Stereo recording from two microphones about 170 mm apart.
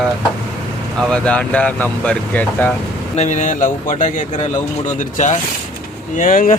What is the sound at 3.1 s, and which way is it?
Speech, 45° left (ahead or behind).